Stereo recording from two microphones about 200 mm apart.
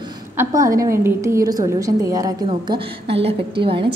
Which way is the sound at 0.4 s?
15° right (ahead or behind).